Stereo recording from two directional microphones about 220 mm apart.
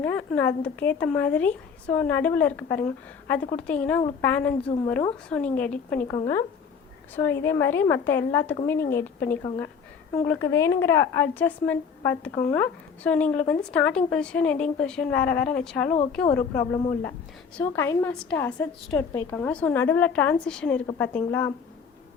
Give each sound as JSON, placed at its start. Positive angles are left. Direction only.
{"t": 0.0, "sound": "a woman's voice", "side_deg": 5}
{"t": 6.1, "sound": "a woman's voice", "side_deg": 15}
{"t": 17.6, "sound": "a woman's voice", "side_deg": 10}